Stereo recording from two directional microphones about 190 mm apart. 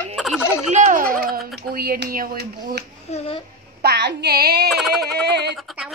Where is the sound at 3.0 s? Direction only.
35° left (ahead or behind).